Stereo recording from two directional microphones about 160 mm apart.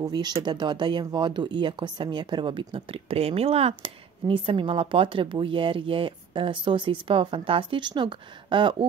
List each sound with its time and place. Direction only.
0.0 s speech: 25° right (ahead or behind)